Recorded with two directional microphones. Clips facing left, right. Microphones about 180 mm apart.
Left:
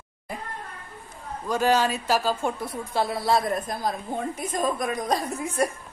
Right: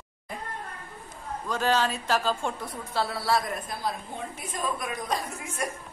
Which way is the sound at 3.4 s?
45° left (ahead or behind).